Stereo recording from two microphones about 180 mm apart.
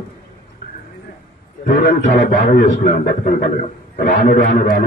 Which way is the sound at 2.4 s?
45° left (ahead or behind).